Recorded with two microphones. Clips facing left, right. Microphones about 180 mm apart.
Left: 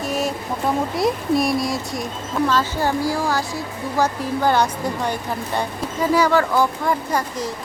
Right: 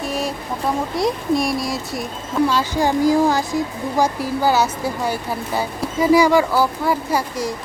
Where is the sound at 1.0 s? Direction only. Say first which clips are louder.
Right 1 dB; centre (ahead or behind).